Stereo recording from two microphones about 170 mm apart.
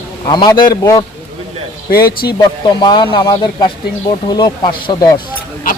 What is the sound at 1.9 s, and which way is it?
Speech, 65° left (ahead or behind).